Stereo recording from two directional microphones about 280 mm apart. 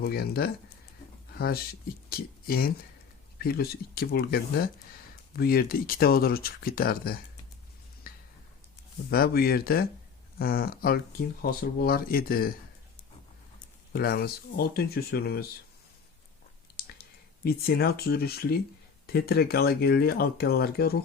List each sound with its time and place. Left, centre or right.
0.0 s speech: left
8.1 s a sound: left
9.0 s speech: left
13.9 s speech: left
17.4 s speech: left